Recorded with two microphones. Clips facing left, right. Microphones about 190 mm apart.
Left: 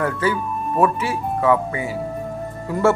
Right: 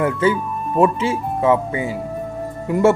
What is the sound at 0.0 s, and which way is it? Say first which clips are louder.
Speech: right 3 dB; 20° right (ahead or behind).